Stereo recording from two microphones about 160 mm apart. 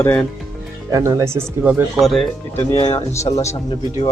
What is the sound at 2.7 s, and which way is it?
Speech, 35° left (ahead or behind).